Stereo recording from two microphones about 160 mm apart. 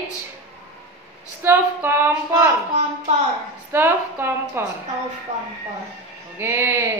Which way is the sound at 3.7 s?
15° right (ahead or behind).